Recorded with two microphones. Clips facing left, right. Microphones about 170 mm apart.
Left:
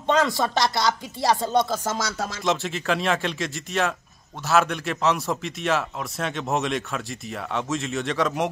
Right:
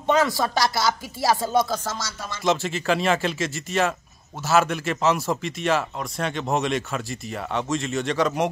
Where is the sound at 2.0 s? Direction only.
85° left.